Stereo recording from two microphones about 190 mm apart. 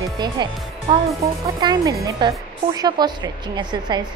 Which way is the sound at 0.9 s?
25° right (ahead or behind).